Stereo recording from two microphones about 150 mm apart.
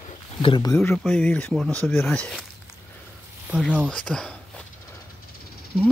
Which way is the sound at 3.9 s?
10° left (ahead or behind).